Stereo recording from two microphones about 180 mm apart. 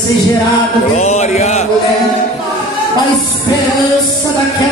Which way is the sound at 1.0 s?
40° left (ahead or behind).